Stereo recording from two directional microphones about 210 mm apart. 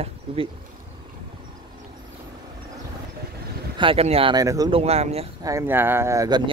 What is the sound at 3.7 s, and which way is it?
Speech, 25° right (ahead or behind).